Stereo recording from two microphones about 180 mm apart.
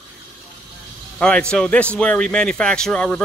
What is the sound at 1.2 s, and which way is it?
A man's voice, 5° left (ahead or behind).